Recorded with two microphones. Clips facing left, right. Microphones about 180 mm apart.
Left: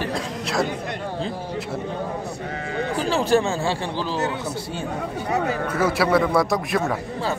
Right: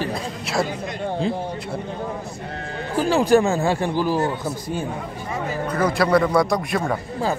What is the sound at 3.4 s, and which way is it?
Speech, 40° right (ahead or behind).